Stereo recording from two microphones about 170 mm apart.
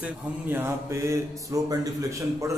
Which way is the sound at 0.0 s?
10° right (ahead or behind).